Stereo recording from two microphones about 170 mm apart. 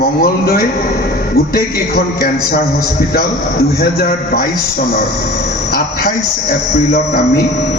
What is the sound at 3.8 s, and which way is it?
Speech, 60° left (ahead or behind).